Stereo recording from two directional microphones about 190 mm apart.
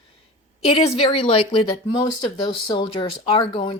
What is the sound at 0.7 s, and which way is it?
A woman's voice, 30° left (ahead or behind).